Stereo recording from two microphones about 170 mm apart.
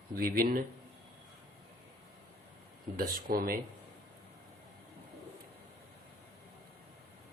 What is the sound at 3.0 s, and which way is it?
Speech, 60° right (ahead or behind).